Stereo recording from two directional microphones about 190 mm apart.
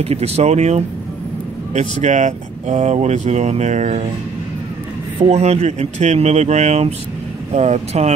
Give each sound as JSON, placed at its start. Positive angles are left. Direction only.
{"t": 0.0, "sound": "speech", "side_deg": -35}
{"t": 5.2, "sound": "speech", "side_deg": -35}